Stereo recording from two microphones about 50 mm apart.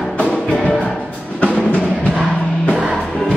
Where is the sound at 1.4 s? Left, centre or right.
Left.